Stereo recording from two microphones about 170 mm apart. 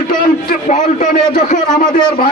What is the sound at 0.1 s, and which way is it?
A man's voice, 50° left (ahead or behind).